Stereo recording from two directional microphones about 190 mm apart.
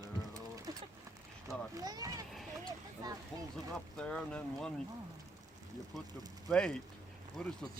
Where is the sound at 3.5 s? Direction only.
5° left (ahead or behind).